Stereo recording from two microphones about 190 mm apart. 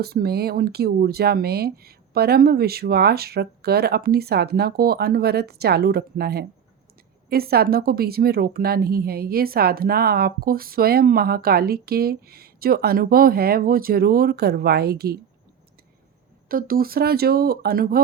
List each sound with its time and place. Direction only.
0.0 s speech: 55° right (ahead or behind)
16.5 s speech: 50° right (ahead or behind)